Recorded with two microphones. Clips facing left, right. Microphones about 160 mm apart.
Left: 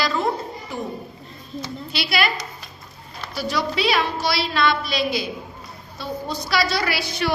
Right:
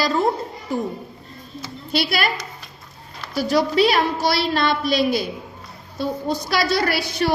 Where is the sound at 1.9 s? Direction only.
45° right (ahead or behind).